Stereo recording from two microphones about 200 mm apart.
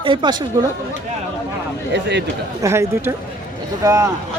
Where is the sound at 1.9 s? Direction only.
60° right (ahead or behind).